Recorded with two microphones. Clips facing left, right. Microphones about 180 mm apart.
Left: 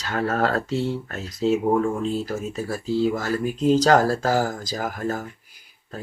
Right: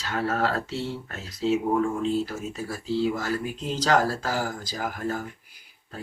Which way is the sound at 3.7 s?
45° left (ahead or behind).